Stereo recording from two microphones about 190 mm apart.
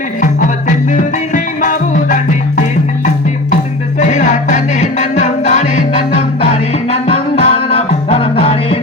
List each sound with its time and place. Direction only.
1.3 s music: 45° left (ahead or behind)
4.0 s music: 40° left (ahead or behind)